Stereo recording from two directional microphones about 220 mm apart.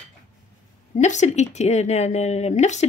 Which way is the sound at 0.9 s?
30° left (ahead or behind).